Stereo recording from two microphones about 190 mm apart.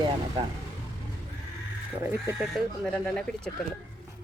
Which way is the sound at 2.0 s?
10° right (ahead or behind).